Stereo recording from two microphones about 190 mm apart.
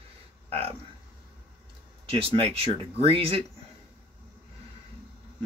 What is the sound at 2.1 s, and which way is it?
Speech, 30° right (ahead or behind).